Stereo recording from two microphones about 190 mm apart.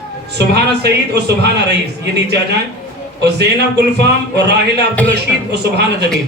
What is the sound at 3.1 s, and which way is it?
A man's voice, 60° right (ahead or behind).